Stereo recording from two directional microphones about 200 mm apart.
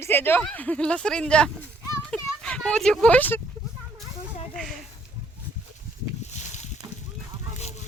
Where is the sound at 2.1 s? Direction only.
5° left (ahead or behind).